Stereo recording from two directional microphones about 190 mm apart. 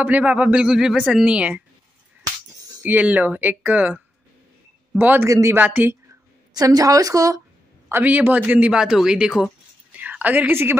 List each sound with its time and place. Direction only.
0.0 s speech: 10° right (ahead or behind)
2.8 s a woman's voice: 10° right (ahead or behind)